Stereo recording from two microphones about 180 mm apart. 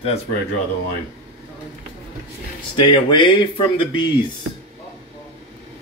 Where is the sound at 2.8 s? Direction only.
30° left (ahead or behind).